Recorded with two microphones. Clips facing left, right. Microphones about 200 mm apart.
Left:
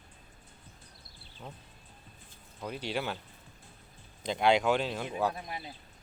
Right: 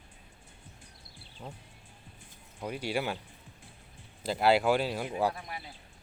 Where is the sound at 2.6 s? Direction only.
10° right (ahead or behind).